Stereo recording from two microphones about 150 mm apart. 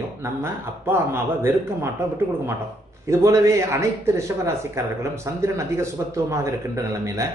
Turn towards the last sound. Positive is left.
turn(degrees=-20)  # may be behind; listen again after turning